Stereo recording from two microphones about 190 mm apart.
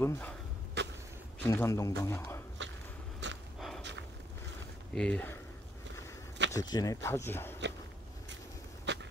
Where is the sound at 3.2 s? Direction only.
70° right (ahead or behind).